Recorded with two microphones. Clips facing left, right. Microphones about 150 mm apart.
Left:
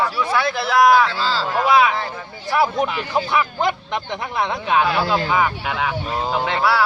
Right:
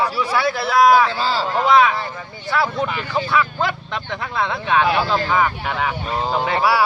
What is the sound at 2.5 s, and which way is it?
Speech, 20° left (ahead or behind).